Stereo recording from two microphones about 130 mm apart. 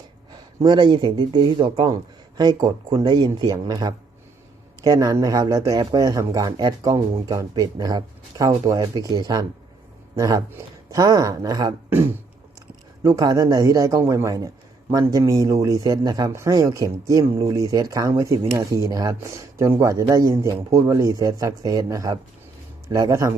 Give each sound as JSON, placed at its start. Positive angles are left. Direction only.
{"t": 0.6, "sound": "speech", "side_deg": -35}
{"t": 11.9, "sound": "speech", "side_deg": -15}